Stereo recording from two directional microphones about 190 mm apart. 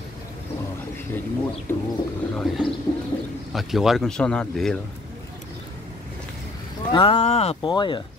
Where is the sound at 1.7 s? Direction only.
15° left (ahead or behind).